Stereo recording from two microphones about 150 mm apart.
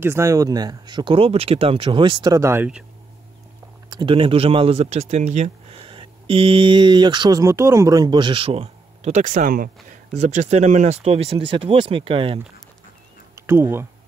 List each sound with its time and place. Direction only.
0.0 s speech: 20° right (ahead or behind)
3.9 s speech: 35° right (ahead or behind); by 9.7 s 65° right (ahead or behind)
9.8 s speech: 55° right (ahead or behind); by 12.4 s 35° right (ahead or behind)
13.5 s speech: 15° right (ahead or behind)